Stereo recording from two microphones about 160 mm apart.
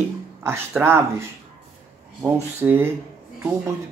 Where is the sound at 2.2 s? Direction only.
15° right (ahead or behind).